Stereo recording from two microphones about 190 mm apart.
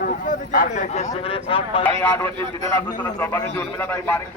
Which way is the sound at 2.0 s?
10° left (ahead or behind).